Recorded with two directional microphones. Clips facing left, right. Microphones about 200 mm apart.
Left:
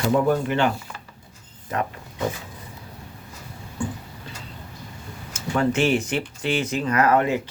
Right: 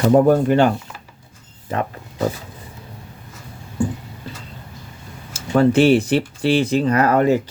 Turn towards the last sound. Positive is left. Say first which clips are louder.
# right 4 dB
turn(degrees=-35)  # may be behind; listen again after turning